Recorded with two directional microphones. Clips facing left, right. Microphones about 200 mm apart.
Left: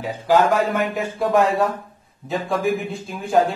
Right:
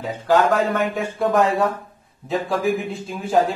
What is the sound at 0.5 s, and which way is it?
A man's voice, centre (ahead or behind).